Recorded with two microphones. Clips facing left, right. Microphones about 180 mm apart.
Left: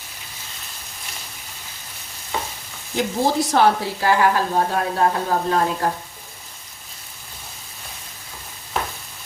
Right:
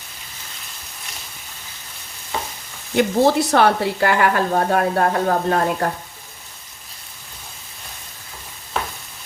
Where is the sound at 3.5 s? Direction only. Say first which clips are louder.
Right 1 dB; 65° right (ahead or behind).